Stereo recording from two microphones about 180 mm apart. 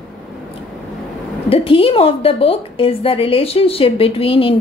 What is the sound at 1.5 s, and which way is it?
A woman's voice, 30° left (ahead or behind).